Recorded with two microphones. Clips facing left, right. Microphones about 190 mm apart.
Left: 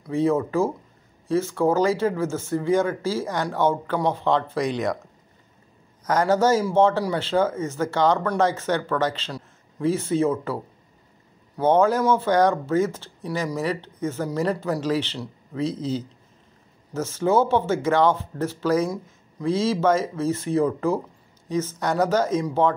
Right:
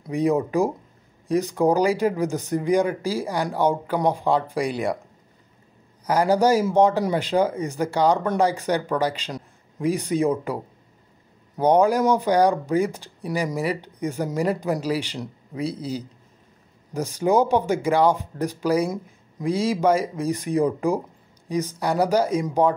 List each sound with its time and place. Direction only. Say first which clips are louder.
0.0 s speech: even; 15° right (ahead or behind)
6.0 s speech: right 1 dB; 10° right (ahead or behind)